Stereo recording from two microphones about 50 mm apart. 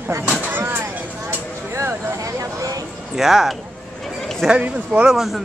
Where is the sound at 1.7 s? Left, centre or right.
Right.